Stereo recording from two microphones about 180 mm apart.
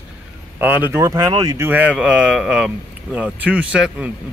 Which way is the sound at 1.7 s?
10° right (ahead or behind).